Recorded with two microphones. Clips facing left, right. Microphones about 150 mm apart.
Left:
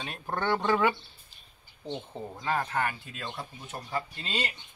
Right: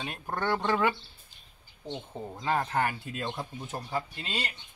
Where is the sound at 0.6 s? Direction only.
5° left (ahead or behind).